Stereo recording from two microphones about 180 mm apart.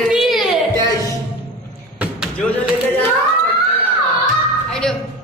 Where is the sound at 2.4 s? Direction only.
10° left (ahead or behind).